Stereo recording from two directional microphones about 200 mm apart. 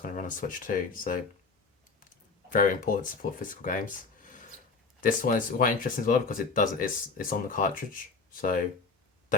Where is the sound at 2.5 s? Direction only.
45° left (ahead or behind).